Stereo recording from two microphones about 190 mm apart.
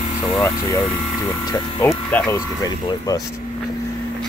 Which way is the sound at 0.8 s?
20° left (ahead or behind).